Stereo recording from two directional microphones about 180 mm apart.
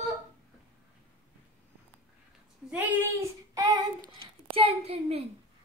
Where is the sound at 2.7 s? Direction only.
10° right (ahead or behind).